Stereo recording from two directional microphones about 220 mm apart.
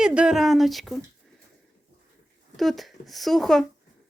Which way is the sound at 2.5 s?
Centre (ahead or behind).